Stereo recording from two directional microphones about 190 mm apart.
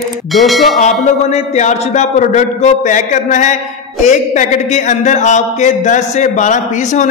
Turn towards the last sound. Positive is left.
turn(degrees=40)  # may be behind; listen again after turning